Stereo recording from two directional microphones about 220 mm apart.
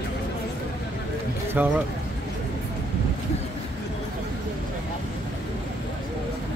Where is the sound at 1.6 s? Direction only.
10° right (ahead or behind).